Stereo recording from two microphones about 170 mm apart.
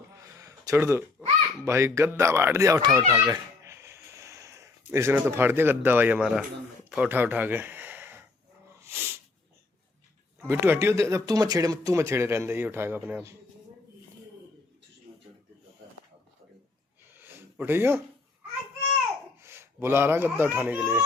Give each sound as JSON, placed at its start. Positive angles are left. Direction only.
{"t": 0.1, "sound": "a sound", "side_deg": -20}
{"t": 1.6, "sound": "speech", "side_deg": -15}
{"t": 3.1, "sound": "music", "side_deg": -20}
{"t": 4.9, "sound": "speech", "side_deg": -15}
{"t": 8.8, "sound": "sneeze", "side_deg": -15}
{"t": 10.4, "sound": "speech", "side_deg": -15}
{"t": 17.2, "sound": "a sound", "side_deg": -10}
{"t": 19.4, "sound": "speech", "side_deg": -15}